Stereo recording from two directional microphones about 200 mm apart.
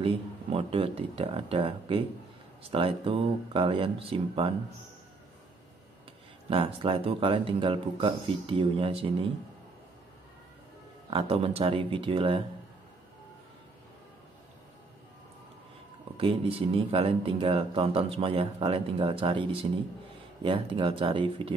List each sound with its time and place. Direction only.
0.0 s speech: 25° right (ahead or behind)
6.5 s speech: 25° right (ahead or behind)
11.1 s speech: 30° right (ahead or behind)
16.2 s speech: 25° right (ahead or behind)